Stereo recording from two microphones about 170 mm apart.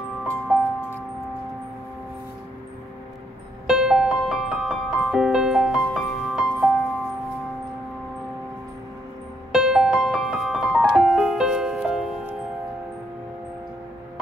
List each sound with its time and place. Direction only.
0.5 s music: 5° right (ahead or behind)
3.6 s music: 5° right (ahead or behind)
9.5 s music: 5° right (ahead or behind)